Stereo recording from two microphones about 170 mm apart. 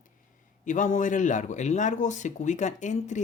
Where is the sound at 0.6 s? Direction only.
50° left (ahead or behind).